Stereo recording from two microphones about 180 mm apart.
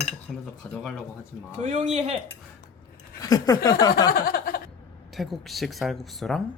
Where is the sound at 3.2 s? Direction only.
20° left (ahead or behind).